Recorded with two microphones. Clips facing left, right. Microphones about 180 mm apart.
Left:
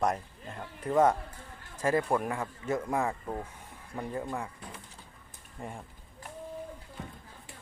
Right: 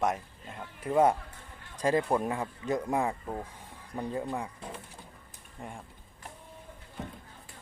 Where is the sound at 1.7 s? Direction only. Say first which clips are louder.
Right 1 dB; 15° right (ahead or behind).